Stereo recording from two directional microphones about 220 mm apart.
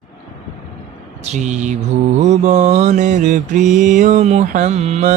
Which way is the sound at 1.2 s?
30° right (ahead or behind).